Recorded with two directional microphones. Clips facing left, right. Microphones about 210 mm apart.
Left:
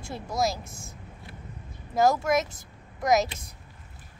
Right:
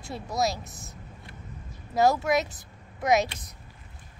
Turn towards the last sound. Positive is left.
turn(degrees=0)  # may be behind; listen again after turning